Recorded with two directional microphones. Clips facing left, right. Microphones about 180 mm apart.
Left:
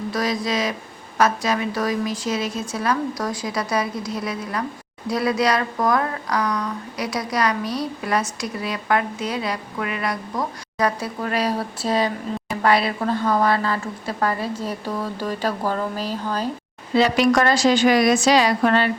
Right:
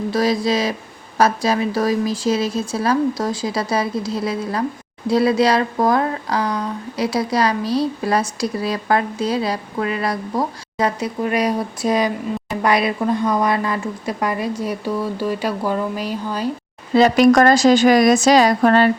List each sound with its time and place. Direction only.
0.1 s a woman's voice: 30° right (ahead or behind); by 16.5 s 10° right (ahead or behind)
16.9 s a woman's voice: 45° right (ahead or behind)